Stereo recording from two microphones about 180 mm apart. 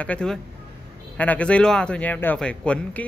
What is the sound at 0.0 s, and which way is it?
A man's voice, 5° left (ahead or behind).